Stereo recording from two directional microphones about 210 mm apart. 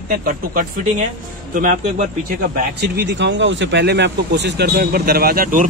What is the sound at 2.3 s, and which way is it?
A man's voice, 45° right (ahead or behind).